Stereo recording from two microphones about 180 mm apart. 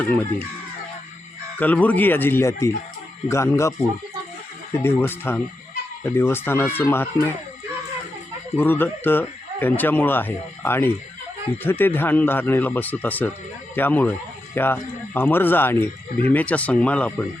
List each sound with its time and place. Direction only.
0.0 s speech: 10° left (ahead or behind)
1.5 s speech: 10° left (ahead or behind)
4.8 s speech: 10° left (ahead or behind)
8.5 s speech: 10° left (ahead or behind)